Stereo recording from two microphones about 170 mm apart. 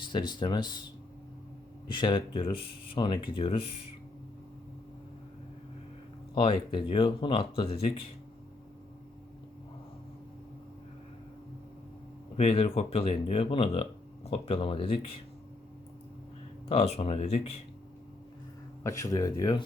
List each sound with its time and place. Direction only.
0.1 s speech: 25° left (ahead or behind)
1.9 s speech: 25° left (ahead or behind)
6.3 s speech: 30° left (ahead or behind)
12.4 s speech: 35° left (ahead or behind)
16.6 s speech: 35° left (ahead or behind)
18.8 s speech: 20° left (ahead or behind)